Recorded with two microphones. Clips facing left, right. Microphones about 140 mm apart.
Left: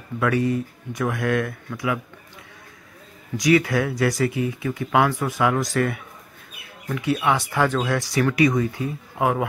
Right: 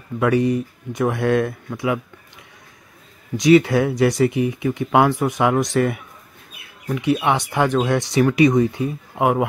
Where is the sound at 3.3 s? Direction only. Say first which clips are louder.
Right 5 dB; 25° right (ahead or behind).